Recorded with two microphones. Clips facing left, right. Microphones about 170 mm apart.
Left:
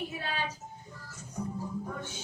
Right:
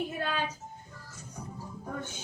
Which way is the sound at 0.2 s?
50° right (ahead or behind).